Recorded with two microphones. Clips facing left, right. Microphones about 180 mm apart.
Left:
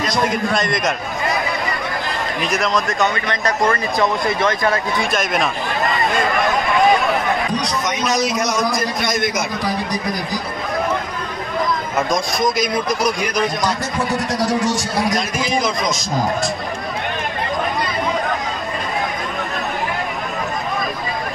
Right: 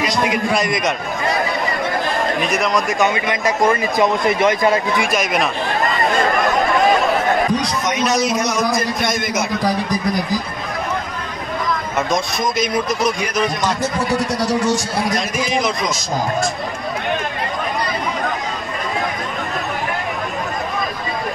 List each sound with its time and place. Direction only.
0.0 s a man's voice: 5° right (ahead or behind)
2.9 s a man's voice: 15° right (ahead or behind)
5.1 s a man's voice: centre (ahead or behind)
8.0 s a man's voice: 5° right (ahead or behind)